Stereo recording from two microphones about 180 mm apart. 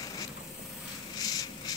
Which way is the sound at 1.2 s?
20° left (ahead or behind).